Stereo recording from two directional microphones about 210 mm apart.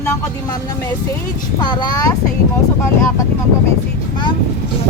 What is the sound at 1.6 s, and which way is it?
Speech, 20° left (ahead or behind).